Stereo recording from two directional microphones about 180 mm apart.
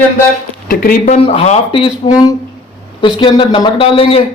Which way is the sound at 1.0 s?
35° left (ahead or behind).